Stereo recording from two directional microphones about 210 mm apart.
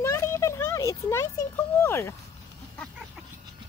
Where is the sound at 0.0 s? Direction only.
15° left (ahead or behind).